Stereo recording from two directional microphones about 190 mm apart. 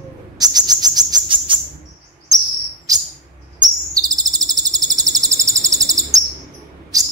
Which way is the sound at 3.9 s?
20° right (ahead or behind).